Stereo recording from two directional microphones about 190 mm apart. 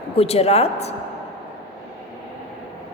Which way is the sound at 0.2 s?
30° left (ahead or behind).